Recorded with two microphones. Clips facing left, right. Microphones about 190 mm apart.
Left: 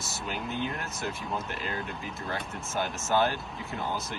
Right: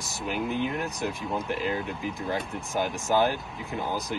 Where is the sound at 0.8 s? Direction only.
15° right (ahead or behind).